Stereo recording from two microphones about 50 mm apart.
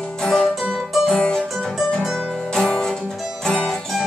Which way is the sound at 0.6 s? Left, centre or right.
Centre.